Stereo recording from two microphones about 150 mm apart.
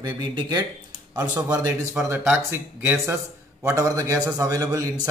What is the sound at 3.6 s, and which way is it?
A man's voice, 20° right (ahead or behind).